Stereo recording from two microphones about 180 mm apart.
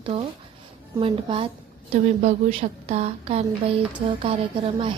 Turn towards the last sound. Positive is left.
turn(degrees=-30)  # may be behind; listen again after turning